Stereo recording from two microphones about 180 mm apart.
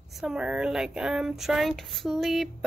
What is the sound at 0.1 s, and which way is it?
A woman's voice, 5° right (ahead or behind).